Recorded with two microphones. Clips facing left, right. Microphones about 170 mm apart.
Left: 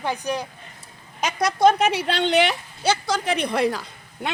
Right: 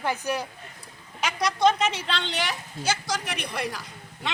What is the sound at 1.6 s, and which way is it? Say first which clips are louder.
Speech: left 5 dB; 55° left (ahead or behind).